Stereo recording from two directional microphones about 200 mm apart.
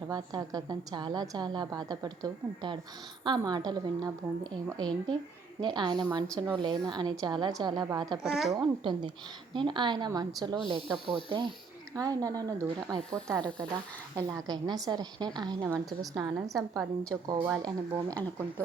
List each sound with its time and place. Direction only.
0.1 s a woman's voice: 20° right (ahead or behind)
6.3 s speech: 10° right (ahead or behind)
6.6 s a woman's voice: 20° right (ahead or behind)
8.2 s a woman's voice: centre (ahead or behind)
8.5 s a woman's voice: 20° right (ahead or behind)